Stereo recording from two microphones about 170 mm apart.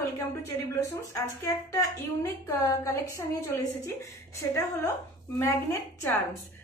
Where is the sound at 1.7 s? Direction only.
20° left (ahead or behind).